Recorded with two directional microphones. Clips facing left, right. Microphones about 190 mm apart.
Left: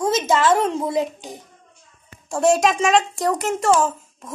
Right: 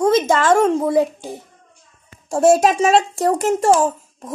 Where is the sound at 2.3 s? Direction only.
40° right (ahead or behind).